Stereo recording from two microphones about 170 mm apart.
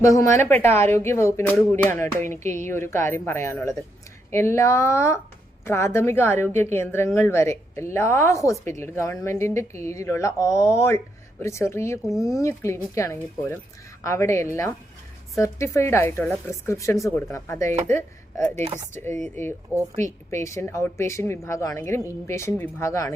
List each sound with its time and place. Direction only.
0.0 s a woman's voice: 20° left (ahead or behind)